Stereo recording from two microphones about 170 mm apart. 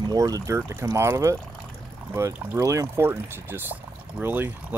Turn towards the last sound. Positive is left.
turn(degrees=-10)  # may be behind; listen again after turning